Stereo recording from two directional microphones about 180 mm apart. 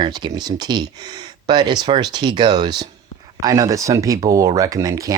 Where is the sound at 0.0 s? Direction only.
25° right (ahead or behind).